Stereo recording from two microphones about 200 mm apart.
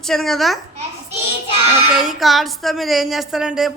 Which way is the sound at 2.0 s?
Centre (ahead or behind).